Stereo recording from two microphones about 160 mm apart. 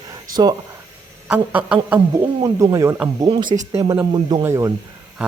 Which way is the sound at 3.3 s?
30° right (ahead or behind).